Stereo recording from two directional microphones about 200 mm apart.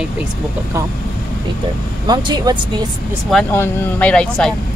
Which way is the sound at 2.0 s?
20° right (ahead or behind).